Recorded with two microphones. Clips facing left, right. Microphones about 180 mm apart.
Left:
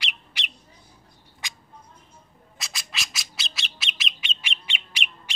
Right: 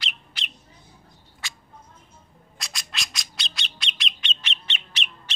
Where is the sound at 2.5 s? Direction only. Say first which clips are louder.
Even; centre (ahead or behind).